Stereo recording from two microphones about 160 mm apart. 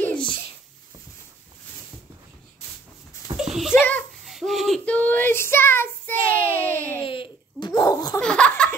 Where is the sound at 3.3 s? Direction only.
5° right (ahead or behind).